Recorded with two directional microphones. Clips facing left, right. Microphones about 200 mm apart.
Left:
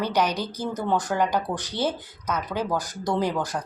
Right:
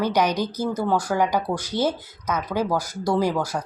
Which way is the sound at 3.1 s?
10° right (ahead or behind).